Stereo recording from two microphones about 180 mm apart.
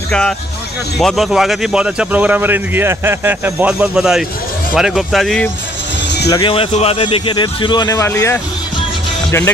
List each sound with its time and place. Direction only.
0.9 s speech: centre (ahead or behind)
6.0 s music: 70° left (ahead or behind)
6.3 s a man's voice: 30° left (ahead or behind)